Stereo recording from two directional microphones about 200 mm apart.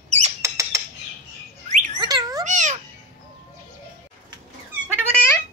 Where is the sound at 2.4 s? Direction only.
35° right (ahead or behind).